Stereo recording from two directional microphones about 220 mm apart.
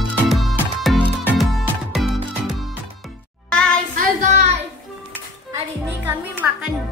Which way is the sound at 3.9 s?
30° right (ahead or behind).